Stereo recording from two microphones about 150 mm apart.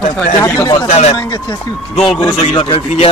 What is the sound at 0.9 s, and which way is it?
Speech, 45° left (ahead or behind).